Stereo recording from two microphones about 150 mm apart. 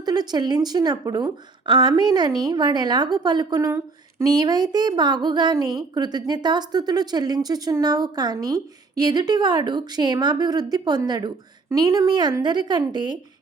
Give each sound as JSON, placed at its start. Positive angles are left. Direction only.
{"t": 0.0, "sound": "a woman's voice", "side_deg": -25}